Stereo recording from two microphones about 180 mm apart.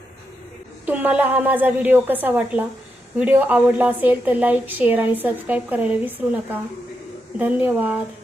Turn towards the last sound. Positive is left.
turn(degrees=-10)  # may be behind; listen again after turning